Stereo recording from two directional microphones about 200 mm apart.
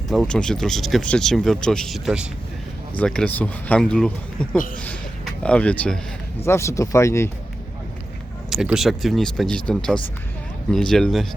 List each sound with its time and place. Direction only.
0.1 s speech: 5° left (ahead or behind)
4.5 s speech: 45° left (ahead or behind)
4.8 s a man's voice: 5° left (ahead or behind)
8.4 s speech: centre (ahead or behind)